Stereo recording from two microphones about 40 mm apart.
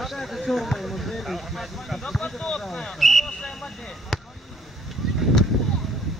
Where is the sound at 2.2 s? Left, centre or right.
Centre.